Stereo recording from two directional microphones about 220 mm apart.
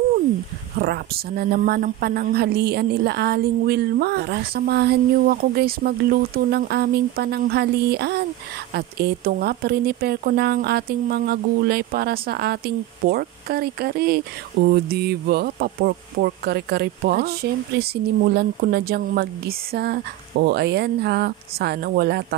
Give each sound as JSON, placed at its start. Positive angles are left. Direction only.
{"t": 0.7, "sound": "a woman's voice", "side_deg": -45}